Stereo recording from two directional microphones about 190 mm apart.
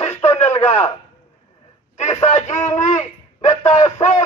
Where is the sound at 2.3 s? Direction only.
40° left (ahead or behind).